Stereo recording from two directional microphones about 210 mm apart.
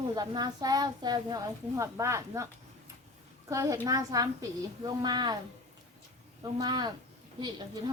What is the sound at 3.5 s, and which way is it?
A woman's voice, 15° right (ahead or behind).